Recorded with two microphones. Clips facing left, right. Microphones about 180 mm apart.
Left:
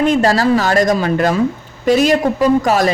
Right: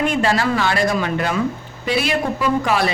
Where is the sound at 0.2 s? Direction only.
40° left (ahead or behind).